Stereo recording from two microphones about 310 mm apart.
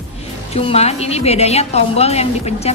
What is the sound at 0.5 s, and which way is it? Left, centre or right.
A woman's voice, centre.